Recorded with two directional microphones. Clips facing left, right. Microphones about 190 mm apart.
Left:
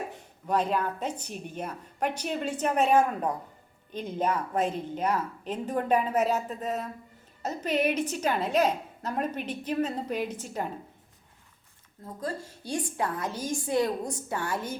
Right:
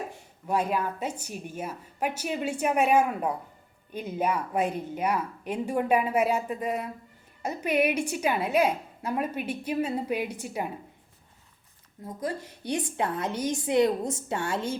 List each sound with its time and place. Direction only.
0.1 s speech: 10° right (ahead or behind)
12.0 s a woman's voice: 15° right (ahead or behind)